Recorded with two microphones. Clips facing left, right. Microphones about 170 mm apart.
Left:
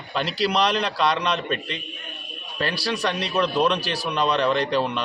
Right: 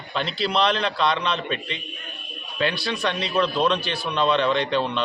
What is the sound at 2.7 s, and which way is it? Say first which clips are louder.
Speech: left 1 dB; 35° left (ahead or behind).